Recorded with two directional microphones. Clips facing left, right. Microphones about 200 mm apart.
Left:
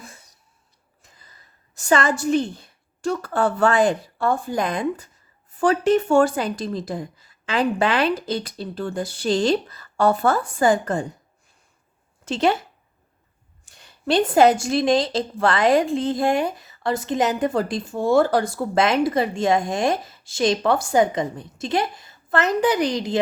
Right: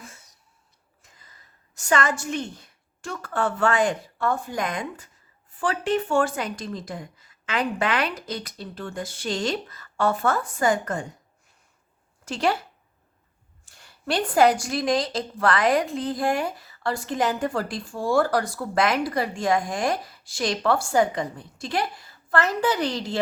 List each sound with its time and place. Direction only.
1.9 s a woman's voice: 30° left (ahead or behind)
12.2 s speech: 25° left (ahead or behind)
13.7 s a woman's voice: 20° left (ahead or behind)